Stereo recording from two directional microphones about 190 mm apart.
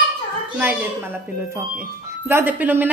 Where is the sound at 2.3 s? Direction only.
10° right (ahead or behind).